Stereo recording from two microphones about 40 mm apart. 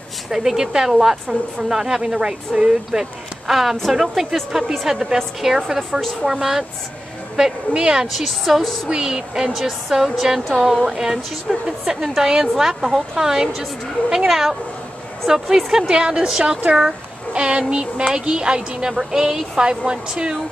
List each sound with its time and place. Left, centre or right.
0.3 s a woman's voice: centre
5.9 s a woman's voice: centre
6.2 s a woman's voice: centre
7.7 s speech: right
8.3 s a woman's voice: centre
8.8 s speech: centre
9.5 s a woman's voice: centre